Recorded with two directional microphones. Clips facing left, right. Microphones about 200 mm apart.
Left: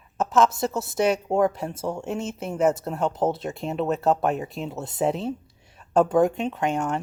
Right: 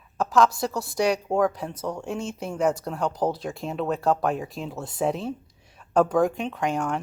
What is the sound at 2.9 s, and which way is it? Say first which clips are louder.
Speech: left 2 dB; 25° left (ahead or behind).